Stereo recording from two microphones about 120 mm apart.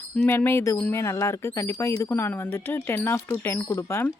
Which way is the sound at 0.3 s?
20° left (ahead or behind).